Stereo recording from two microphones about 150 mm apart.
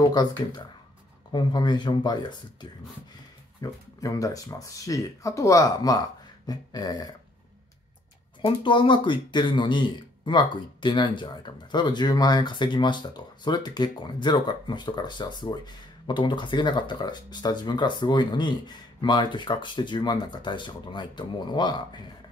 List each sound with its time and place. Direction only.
0.1 s speech: 30° left (ahead or behind)
8.4 s a man's voice: 35° left (ahead or behind)